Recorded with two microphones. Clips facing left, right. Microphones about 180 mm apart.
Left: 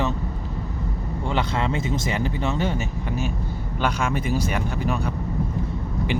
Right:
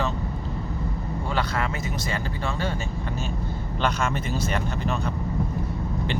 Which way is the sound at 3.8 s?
10° left (ahead or behind).